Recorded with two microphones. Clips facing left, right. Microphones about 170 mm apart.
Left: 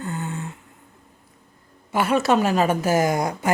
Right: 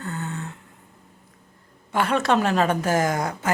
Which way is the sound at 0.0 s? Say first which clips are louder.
Left 2 dB; 15° left (ahead or behind).